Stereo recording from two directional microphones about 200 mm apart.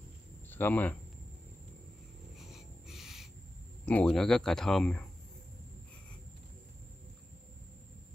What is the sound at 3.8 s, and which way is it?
Speech, 5° left (ahead or behind).